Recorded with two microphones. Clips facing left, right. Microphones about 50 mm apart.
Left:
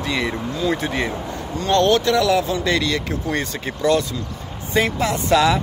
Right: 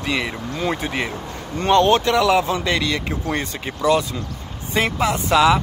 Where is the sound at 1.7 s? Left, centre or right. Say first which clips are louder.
Right 1 dB; right.